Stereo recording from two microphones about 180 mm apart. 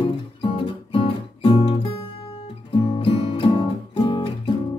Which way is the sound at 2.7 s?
25° left (ahead or behind).